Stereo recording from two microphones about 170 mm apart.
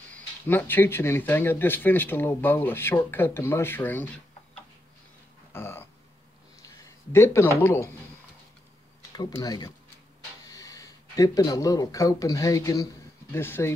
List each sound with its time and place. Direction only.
0.1 s speech: 10° left (ahead or behind)
5.5 s a sound: 15° left (ahead or behind)
6.6 s speech: 15° left (ahead or behind)
9.1 s speech: 20° left (ahead or behind)